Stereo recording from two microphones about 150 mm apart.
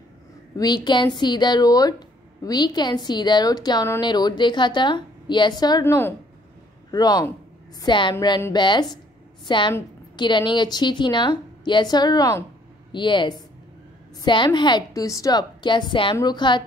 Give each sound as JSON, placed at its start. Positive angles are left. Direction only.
{"t": 0.6, "sound": "a woman's voice", "side_deg": 30}